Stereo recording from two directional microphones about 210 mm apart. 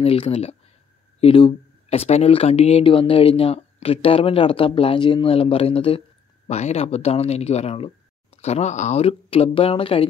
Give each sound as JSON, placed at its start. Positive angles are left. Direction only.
{"t": 0.0, "sound": "speech", "side_deg": 25}